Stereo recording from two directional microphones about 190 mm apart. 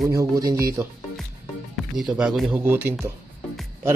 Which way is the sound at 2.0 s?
5° right (ahead or behind).